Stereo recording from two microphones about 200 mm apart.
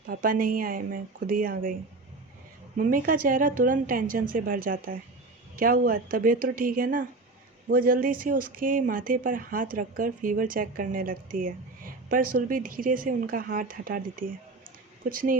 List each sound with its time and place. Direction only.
0.1 s speech: 45° right (ahead or behind)
2.7 s speech: 45° right (ahead or behind)